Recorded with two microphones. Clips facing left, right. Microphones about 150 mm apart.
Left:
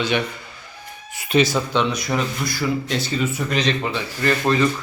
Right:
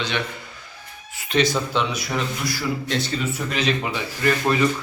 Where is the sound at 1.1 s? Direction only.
10° left (ahead or behind).